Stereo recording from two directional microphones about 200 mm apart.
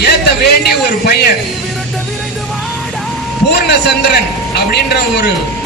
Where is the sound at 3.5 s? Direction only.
55° left (ahead or behind).